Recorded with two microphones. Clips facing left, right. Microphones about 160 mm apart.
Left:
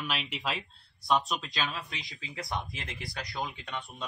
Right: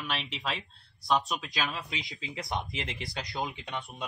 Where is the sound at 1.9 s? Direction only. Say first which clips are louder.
Right 4 dB; 20° right (ahead or behind).